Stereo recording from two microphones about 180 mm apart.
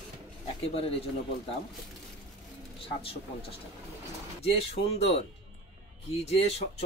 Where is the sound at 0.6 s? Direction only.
35° left (ahead or behind).